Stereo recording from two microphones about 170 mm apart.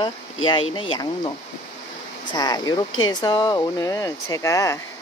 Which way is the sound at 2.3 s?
20° left (ahead or behind).